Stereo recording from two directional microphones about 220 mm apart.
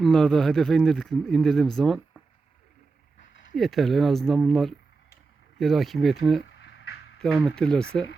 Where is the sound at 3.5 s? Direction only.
Centre (ahead or behind).